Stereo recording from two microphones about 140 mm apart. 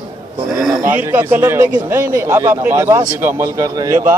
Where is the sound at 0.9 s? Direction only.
15° right (ahead or behind).